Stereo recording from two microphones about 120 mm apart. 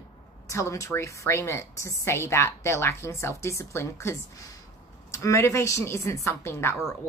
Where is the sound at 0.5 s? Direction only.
25° left (ahead or behind).